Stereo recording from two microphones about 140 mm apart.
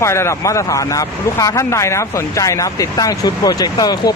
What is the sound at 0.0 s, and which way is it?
Speech, 20° left (ahead or behind).